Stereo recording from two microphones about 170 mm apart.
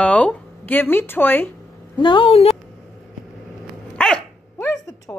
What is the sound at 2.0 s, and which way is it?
Speech, 30° left (ahead or behind).